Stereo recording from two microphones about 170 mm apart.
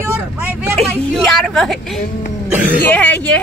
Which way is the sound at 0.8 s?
Centre (ahead or behind).